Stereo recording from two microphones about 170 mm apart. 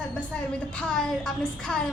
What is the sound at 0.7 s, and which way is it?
A woman's voice, 5° left (ahead or behind).